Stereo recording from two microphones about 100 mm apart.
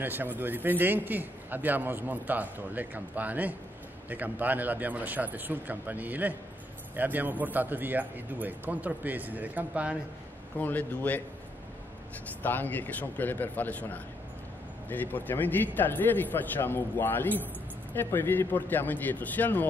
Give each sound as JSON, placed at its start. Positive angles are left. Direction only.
{"t": 0.0, "sound": "a man's voice", "side_deg": -20}
{"t": 10.6, "sound": "a man's voice", "side_deg": 20}
{"t": 12.4, "sound": "a man's voice", "side_deg": 20}